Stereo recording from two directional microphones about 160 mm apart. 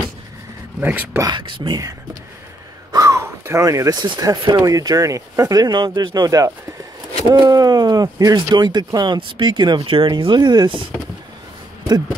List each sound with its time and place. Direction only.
0.7 s speech: 10° right (ahead or behind)
1.2 s speech: 30° right (ahead or behind)